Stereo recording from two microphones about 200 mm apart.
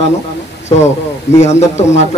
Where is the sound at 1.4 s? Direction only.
35° left (ahead or behind).